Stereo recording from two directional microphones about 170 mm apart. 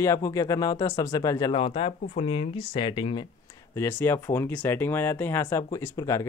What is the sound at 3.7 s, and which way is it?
Speech, 15° left (ahead or behind).